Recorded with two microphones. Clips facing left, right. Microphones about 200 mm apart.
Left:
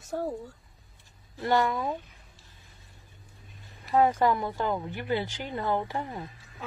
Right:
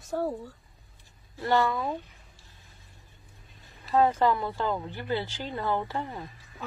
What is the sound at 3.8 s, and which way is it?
Speech, 15° left (ahead or behind).